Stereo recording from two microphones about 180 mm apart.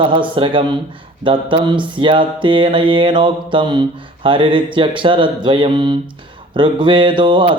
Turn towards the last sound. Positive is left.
turn(degrees=-25)  # may be behind; listen again after turning